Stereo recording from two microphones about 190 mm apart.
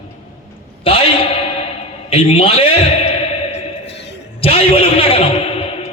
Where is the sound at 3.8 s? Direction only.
65° left (ahead or behind).